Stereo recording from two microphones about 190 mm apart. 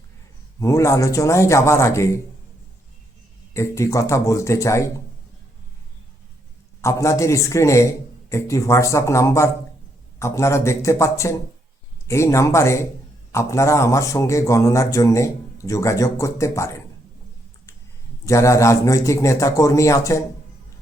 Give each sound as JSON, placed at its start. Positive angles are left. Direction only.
{"t": 0.6, "sound": "a man's voice", "side_deg": 15}
{"t": 3.5, "sound": "a man's voice", "side_deg": 15}
{"t": 6.8, "sound": "a man's voice", "side_deg": 15}
{"t": 18.3, "sound": "a man's voice", "side_deg": 15}